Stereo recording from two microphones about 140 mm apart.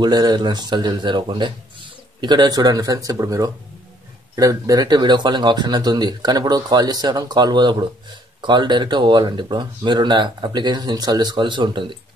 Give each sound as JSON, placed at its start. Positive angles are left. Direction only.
{"t": 0.0, "sound": "speech", "side_deg": -30}